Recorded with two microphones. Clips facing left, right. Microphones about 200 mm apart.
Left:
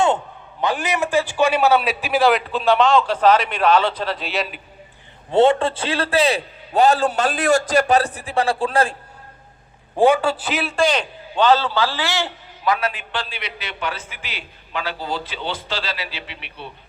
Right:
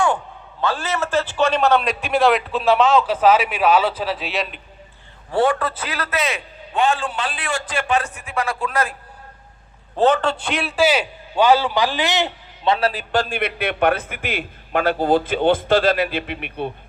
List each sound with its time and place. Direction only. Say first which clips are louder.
0.6 s a man's voice: left 1 dB; 15° left (ahead or behind)
5.3 s a man's voice: left 4 dB; 25° left (ahead or behind)
10.0 s a man's voice: left 1 dB; 10° left (ahead or behind); by 16.7 s 50° right (ahead or behind)